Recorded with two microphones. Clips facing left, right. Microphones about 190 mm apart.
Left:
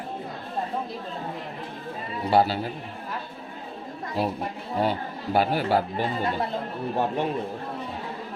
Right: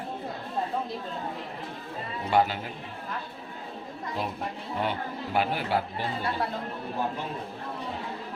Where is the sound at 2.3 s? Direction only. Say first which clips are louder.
Left 3 dB; 35° left (ahead or behind).